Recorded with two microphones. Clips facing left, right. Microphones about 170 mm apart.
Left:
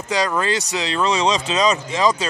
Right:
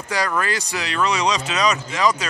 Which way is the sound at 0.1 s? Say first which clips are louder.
Left 3 dB; 20° left (ahead or behind).